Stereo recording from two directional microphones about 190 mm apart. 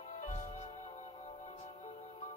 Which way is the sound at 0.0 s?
35° left (ahead or behind).